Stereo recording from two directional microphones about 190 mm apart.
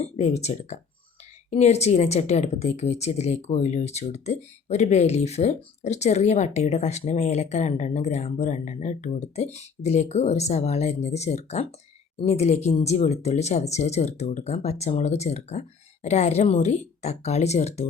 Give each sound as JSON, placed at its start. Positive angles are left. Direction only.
{"t": 0.0, "sound": "speech", "side_deg": 35}